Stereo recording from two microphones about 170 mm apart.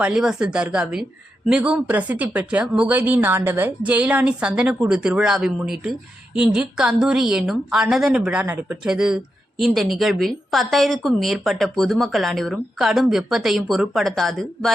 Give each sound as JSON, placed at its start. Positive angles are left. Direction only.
{"t": 0.0, "sound": "speech", "side_deg": -5}